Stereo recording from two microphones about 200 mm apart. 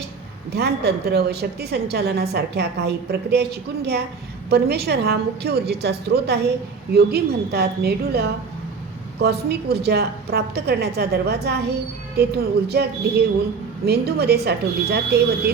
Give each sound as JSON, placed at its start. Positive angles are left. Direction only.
{"t": 0.5, "sound": "a woman's voice", "side_deg": -55}